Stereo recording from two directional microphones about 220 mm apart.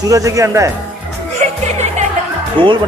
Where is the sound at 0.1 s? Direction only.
15° right (ahead or behind).